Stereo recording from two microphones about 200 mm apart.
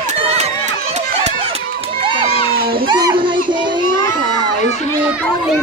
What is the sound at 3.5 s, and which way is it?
Children playing, 25° right (ahead or behind).